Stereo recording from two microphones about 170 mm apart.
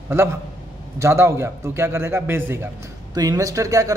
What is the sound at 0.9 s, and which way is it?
Speech, 15° right (ahead or behind).